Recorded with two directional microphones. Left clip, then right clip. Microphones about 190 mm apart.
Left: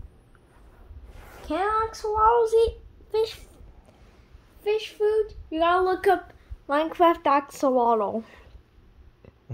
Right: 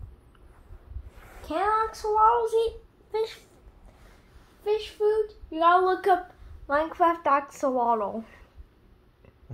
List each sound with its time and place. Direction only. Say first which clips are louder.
1.4 s a child's voice: even; 45° left (ahead or behind)
4.6 s speech: left 1 dB; 60° left (ahead or behind)